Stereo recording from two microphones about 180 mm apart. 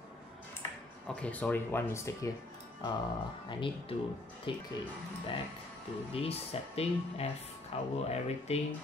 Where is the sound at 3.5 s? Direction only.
30° left (ahead or behind).